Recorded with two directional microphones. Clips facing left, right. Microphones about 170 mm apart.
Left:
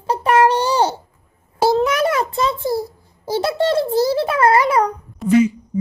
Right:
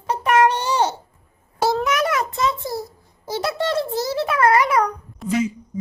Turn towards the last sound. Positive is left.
turn(degrees=65)  # may be behind; listen again after turning